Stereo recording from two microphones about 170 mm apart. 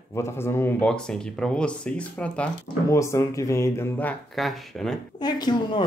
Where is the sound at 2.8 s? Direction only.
15° left (ahead or behind); by 5.0 s centre (ahead or behind).